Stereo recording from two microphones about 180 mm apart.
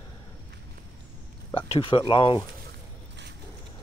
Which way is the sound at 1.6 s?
30° left (ahead or behind).